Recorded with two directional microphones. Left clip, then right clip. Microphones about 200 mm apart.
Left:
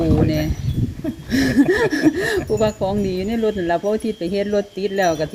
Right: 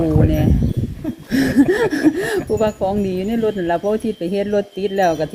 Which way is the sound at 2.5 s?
5° right (ahead or behind).